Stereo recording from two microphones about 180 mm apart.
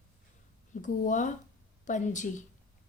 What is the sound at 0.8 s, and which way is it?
A woman's voice, 45° left (ahead or behind).